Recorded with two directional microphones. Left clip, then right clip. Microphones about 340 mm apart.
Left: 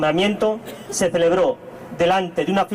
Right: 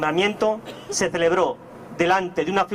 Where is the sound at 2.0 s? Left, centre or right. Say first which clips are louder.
Left 2 dB; right.